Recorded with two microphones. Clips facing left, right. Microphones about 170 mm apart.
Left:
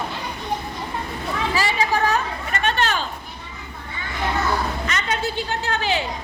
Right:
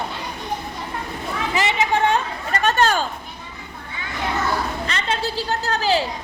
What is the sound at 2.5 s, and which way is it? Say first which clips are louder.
Speech: right 4 dB; 45° right (ahead or behind).